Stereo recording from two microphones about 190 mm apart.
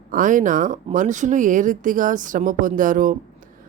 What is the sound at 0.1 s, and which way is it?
Speech, 45° right (ahead or behind).